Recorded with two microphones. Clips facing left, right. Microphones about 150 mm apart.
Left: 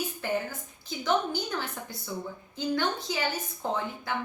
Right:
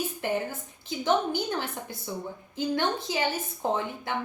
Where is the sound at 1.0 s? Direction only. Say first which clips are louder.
Right 2 dB; 20° right (ahead or behind).